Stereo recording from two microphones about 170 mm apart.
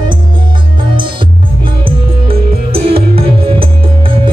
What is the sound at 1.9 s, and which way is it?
Music, 35° right (ahead or behind).